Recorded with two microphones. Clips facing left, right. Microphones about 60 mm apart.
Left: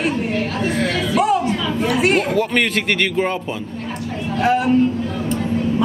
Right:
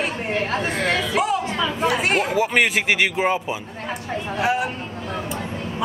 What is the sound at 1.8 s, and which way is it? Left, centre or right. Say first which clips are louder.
Speech: left 4 dB; centre.